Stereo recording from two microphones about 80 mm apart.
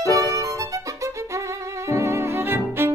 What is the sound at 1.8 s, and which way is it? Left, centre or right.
Music, right.